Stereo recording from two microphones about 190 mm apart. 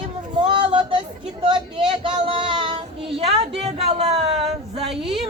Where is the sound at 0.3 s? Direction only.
25° right (ahead or behind).